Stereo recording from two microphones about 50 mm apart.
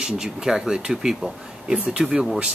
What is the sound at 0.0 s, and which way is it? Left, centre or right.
Speech, centre.